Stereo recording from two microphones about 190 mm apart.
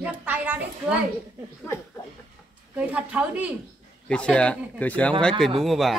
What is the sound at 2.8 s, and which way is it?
Speech, 5° right (ahead or behind).